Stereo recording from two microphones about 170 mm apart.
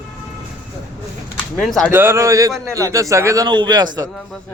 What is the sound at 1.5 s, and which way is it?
Speech, 5° left (ahead or behind).